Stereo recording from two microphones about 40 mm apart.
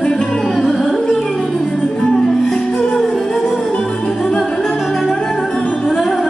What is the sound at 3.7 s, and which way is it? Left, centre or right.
Music, left.